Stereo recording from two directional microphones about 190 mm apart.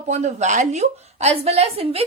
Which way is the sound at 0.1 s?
35° right (ahead or behind).